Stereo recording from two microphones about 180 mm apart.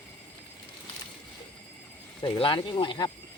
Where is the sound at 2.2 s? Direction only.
25° left (ahead or behind).